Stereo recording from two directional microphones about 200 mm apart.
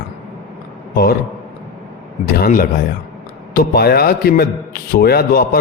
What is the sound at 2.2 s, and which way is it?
A man's voice, 45° left (ahead or behind).